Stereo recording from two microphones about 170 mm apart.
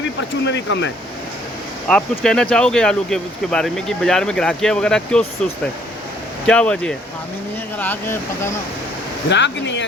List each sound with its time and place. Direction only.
0.2 s speech: 90° left
1.9 s speech: 5° left (ahead or behind)
6.4 s speech: 5° left (ahead or behind)
9.3 s speech: 90° left